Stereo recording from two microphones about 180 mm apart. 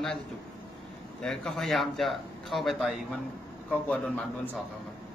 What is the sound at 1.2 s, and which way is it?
A man's voice, 5° left (ahead or behind).